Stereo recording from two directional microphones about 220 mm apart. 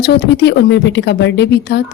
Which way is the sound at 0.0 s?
50° left (ahead or behind).